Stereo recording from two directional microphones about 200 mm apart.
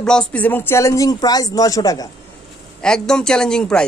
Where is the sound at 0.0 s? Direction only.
5° left (ahead or behind).